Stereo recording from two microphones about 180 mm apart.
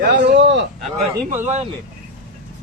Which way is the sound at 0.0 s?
60° right (ahead or behind).